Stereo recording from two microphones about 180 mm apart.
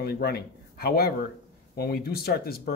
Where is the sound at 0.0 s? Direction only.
60° left (ahead or behind).